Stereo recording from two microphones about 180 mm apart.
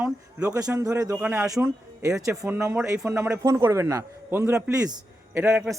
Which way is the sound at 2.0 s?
15° right (ahead or behind).